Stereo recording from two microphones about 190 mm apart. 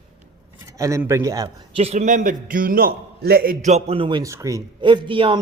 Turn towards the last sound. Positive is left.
turn(degrees=-25)  # may be behind; listen again after turning